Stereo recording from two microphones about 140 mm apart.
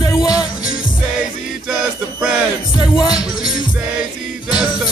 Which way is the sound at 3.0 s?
5° right (ahead or behind).